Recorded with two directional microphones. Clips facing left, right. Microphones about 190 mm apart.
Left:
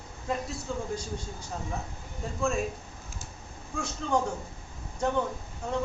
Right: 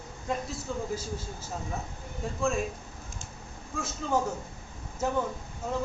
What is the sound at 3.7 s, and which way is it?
A man's voice, 5° right (ahead or behind).